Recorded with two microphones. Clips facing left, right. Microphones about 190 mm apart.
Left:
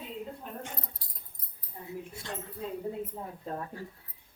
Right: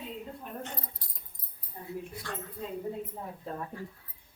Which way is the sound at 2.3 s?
20° left (ahead or behind).